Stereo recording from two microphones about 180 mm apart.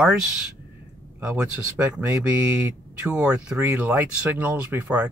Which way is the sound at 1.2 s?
10° right (ahead or behind).